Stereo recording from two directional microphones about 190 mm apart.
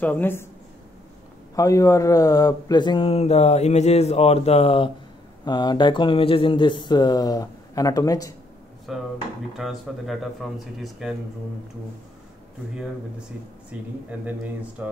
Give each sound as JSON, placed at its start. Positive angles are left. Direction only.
{"t": 0.0, "sound": "speech", "side_deg": 10}
{"t": 1.5, "sound": "speech", "side_deg": 15}
{"t": 8.9, "sound": "speech", "side_deg": 0}
{"t": 13.7, "sound": "speech", "side_deg": -5}